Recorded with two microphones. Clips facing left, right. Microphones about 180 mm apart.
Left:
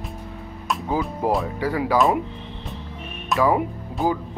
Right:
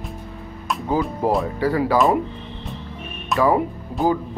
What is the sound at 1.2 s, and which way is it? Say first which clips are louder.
Speech: right 2 dB; 15° left (ahead or behind).